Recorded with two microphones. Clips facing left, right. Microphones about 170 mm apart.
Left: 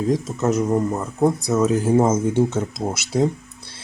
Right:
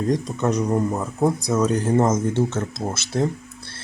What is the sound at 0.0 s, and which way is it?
Speech, centre (ahead or behind).